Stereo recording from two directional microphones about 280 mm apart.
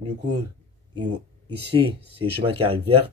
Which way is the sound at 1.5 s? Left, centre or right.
Centre.